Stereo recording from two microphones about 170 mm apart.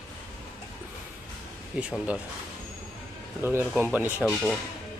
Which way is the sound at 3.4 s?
15° right (ahead or behind).